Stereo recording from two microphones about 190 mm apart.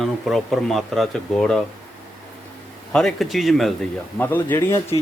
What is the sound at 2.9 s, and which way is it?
Speech, 5° left (ahead or behind).